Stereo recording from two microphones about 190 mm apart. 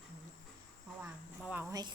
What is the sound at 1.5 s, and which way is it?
Speech, 15° right (ahead or behind).